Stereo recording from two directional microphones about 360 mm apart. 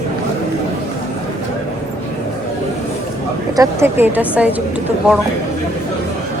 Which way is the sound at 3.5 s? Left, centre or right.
Centre.